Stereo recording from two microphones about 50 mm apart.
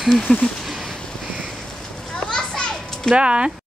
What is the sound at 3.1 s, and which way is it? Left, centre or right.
Speech, right.